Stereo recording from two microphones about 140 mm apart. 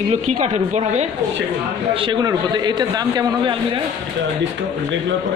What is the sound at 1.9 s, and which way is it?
A man's voice, 35° right (ahead or behind).